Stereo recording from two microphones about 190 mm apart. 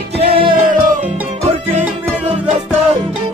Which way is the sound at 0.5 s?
45° right (ahead or behind).